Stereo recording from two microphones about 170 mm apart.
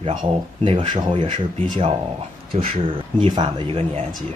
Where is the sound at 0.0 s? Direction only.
30° right (ahead or behind).